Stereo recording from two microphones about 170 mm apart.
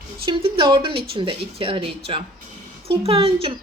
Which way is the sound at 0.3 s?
30° right (ahead or behind).